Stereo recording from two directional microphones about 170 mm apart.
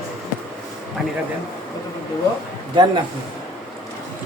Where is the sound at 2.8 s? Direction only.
30° right (ahead or behind).